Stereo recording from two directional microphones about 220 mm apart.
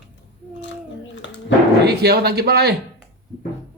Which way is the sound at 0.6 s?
55° left (ahead or behind).